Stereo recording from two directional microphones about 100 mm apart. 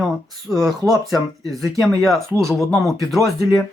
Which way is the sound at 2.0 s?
Centre (ahead or behind).